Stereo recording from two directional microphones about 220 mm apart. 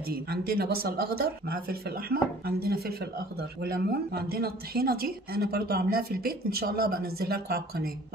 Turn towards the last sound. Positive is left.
turn(degrees=-45)  # may be behind; listen again after turning